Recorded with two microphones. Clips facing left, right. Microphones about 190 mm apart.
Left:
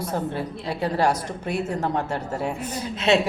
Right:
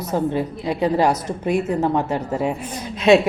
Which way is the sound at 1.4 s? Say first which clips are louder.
Right 7 dB; 10° right (ahead or behind).